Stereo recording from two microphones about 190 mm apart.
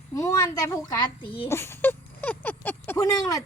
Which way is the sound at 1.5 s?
15° left (ahead or behind).